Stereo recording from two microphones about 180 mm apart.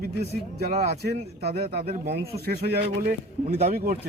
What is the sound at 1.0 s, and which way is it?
A man's voice, 60° right (ahead or behind).